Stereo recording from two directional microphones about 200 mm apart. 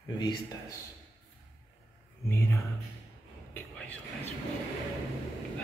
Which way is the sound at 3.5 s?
5° left (ahead or behind).